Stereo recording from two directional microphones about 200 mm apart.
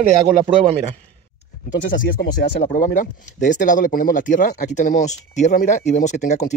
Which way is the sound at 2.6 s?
40° left (ahead or behind).